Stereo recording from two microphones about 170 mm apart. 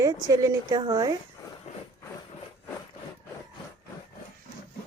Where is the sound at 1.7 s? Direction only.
40° left (ahead or behind).